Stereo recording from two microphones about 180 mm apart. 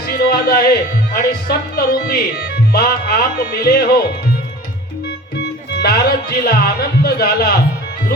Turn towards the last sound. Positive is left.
turn(degrees=60)  # may be behind; listen again after turning